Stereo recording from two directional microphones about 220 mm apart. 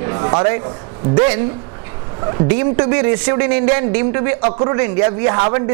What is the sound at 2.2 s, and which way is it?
Speech, 20° right (ahead or behind).